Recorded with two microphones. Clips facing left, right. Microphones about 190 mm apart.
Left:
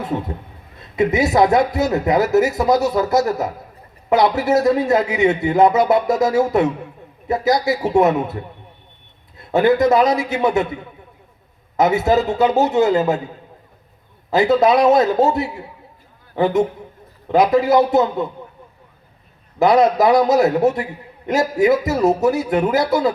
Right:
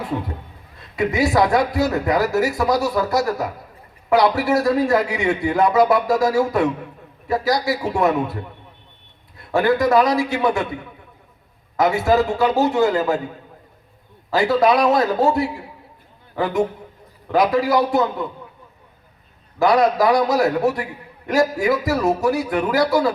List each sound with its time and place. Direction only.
0.8 s a man's voice: 20° left (ahead or behind)
9.4 s a man's voice: 20° left (ahead or behind)
11.8 s a man's voice: 20° left (ahead or behind)
14.3 s a man's voice: 20° left (ahead or behind)
19.5 s a man's voice: 20° left (ahead or behind)